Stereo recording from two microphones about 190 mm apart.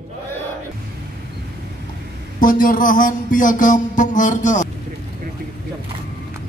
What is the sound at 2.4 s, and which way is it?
Music, 45° left (ahead or behind).